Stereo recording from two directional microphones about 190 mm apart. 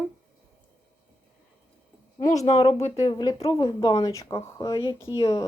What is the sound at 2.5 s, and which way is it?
Speech, 30° left (ahead or behind).